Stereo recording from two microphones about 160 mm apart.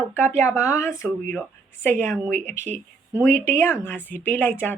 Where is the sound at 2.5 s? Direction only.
45° right (ahead or behind).